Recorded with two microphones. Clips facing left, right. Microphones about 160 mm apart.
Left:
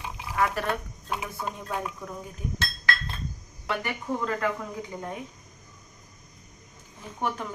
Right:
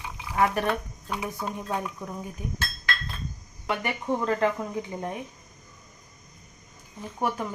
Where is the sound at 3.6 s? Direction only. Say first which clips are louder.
Right 2 dB; 20° right (ahead or behind).